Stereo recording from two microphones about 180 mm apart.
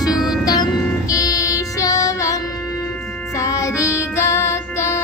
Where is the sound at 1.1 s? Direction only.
20° left (ahead or behind).